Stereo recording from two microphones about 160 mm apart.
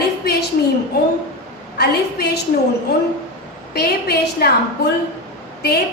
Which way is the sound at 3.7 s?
80° left.